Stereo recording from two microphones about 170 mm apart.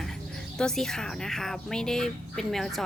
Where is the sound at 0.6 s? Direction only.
5° left (ahead or behind).